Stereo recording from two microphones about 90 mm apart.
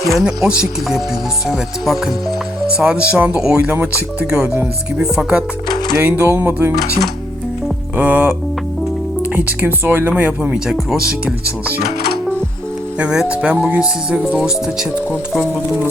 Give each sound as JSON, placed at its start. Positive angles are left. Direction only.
{"t": 0.1, "sound": "speech", "side_deg": -5}
{"t": 4.3, "sound": "speech", "side_deg": -5}
{"t": 6.0, "sound": "speech", "side_deg": -25}
{"t": 7.9, "sound": "speech", "side_deg": -20}
{"t": 9.3, "sound": "speech", "side_deg": -20}
{"t": 13.0, "sound": "speech", "side_deg": -10}